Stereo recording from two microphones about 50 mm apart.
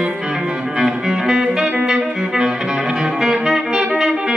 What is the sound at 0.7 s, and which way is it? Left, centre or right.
Music, centre.